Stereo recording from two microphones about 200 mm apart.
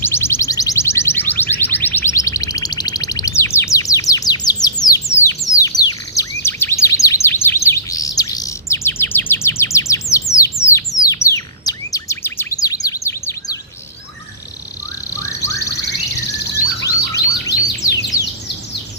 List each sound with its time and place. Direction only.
0.0 s music: 10° left (ahead or behind)
4.6 s bird: 20° left (ahead or behind)
5.5 s chirp: 15° left (ahead or behind)
15.1 s car alarm: 15° left (ahead or behind)
16.6 s chirp: 15° left (ahead or behind)